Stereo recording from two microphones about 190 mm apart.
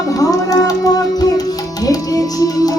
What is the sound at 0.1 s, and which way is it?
Music, 20° left (ahead or behind).